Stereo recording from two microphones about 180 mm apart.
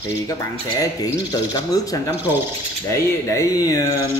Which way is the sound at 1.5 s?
20° left (ahead or behind).